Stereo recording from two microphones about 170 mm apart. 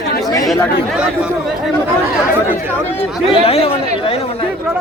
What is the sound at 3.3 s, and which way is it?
Speech, 35° left (ahead or behind).